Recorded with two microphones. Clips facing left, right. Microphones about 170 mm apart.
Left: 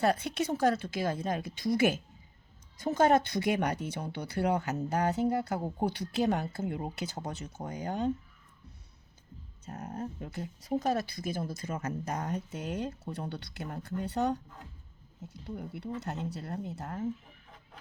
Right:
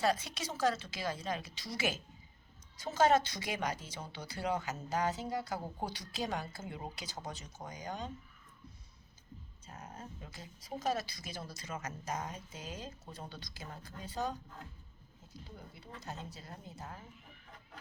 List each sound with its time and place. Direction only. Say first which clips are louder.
0.0 s speech: left 5 dB; 55° left (ahead or behind)
9.6 s speech: left 10 dB; 60° left (ahead or behind)